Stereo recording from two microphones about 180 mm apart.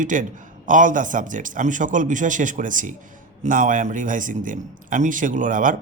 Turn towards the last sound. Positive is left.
turn(degrees=-45)  # may be behind; listen again after turning